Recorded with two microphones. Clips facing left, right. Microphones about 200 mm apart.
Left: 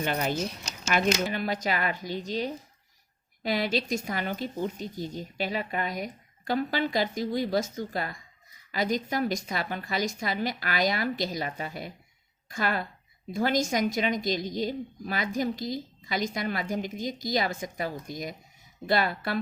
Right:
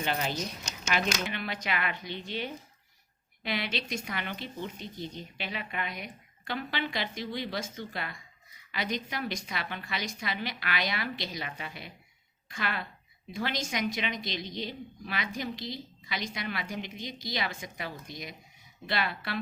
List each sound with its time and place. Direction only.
0.0 s a woman's voice: 50° left (ahead or behind)
0.3 s speech: centre (ahead or behind)
1.2 s a woman's voice: 40° left (ahead or behind)